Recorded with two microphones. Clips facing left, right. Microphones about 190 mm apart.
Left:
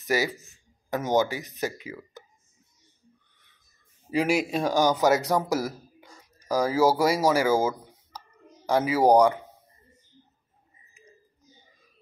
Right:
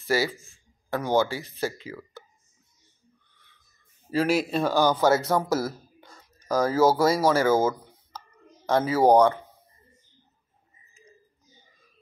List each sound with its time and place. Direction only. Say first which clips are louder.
0.0 s speech: right 1 dB; 15° left (ahead or behind)
4.1 s speech: right 1 dB; 15° left (ahead or behind)